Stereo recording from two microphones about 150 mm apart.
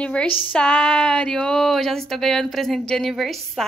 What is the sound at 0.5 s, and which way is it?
A woman's voice, 5° left (ahead or behind).